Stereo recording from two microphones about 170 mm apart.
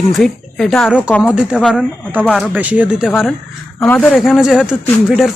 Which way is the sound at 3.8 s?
10° left (ahead or behind).